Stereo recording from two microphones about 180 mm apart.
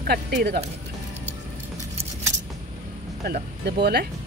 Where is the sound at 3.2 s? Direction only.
65° right (ahead or behind).